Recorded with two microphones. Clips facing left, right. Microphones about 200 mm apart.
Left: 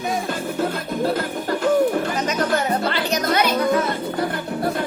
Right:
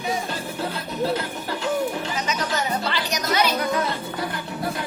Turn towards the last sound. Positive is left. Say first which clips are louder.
# left 3 dB
turn(degrees=55)  # may be behind; listen again after turning